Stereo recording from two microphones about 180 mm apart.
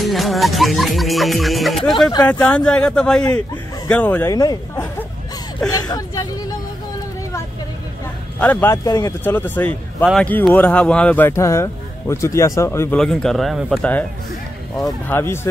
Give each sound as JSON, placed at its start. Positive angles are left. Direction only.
{"t": 0.0, "sound": "music", "side_deg": 0}
{"t": 2.2, "sound": "speech", "side_deg": 5}
{"t": 8.4, "sound": "speech", "side_deg": 10}
{"t": 13.0, "sound": "speech", "side_deg": 0}
{"t": 15.0, "sound": "speech", "side_deg": 15}